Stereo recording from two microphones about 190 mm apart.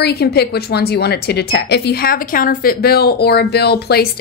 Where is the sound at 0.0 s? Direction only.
60° left (ahead or behind).